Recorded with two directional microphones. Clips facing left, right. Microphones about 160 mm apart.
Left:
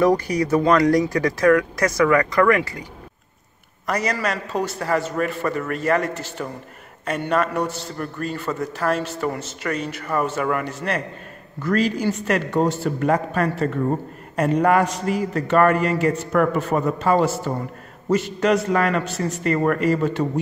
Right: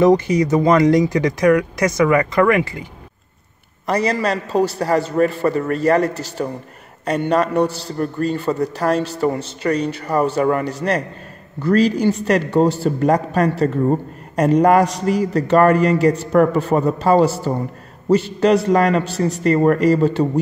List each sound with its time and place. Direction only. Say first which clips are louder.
0.0 s speech: right 5 dB; 20° right (ahead or behind)
3.8 s a man's voice: right 5 dB; 30° right (ahead or behind)